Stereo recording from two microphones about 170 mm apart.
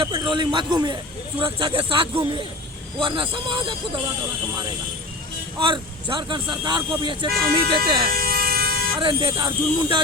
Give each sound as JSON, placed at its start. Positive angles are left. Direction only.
{"t": 0.0, "sound": "a man's voice", "side_deg": -30}
{"t": 5.5, "sound": "speech", "side_deg": -30}
{"t": 7.3, "sound": "speech", "side_deg": -60}
{"t": 8.1, "sound": "vehicle", "side_deg": -60}
{"t": 9.0, "sound": "speech", "side_deg": -30}